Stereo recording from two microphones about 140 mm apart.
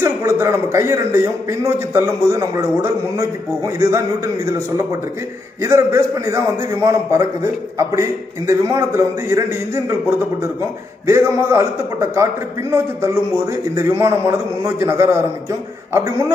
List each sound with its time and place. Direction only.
0.0 s a man's voice: 20° right (ahead or behind)
5.6 s a man's voice: 20° right (ahead or behind)
11.1 s a man's voice: 20° right (ahead or behind)